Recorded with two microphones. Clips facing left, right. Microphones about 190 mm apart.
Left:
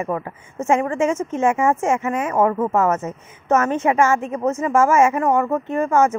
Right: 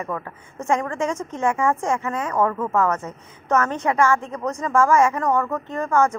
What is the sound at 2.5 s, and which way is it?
Speech, 25° left (ahead or behind).